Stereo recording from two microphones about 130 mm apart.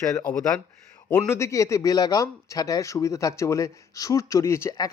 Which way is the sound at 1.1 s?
20° left (ahead or behind).